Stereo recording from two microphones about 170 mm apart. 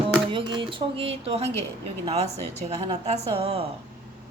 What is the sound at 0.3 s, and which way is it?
Speech, 30° right (ahead or behind).